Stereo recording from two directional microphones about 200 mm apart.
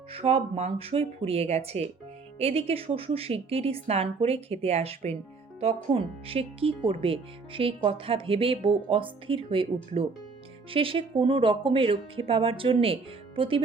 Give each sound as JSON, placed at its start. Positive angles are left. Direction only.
{"t": 0.1, "sound": "speech", "side_deg": -30}